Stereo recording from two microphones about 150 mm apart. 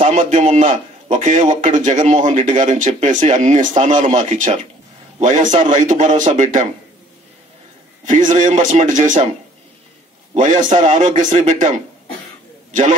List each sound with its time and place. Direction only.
0.0 s a man's voice: 50° right (ahead or behind)
8.0 s a man's voice: 55° right (ahead or behind)
10.3 s a man's voice: 55° right (ahead or behind)